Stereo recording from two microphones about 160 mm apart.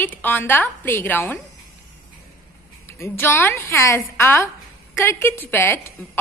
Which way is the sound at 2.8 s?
15° left (ahead or behind).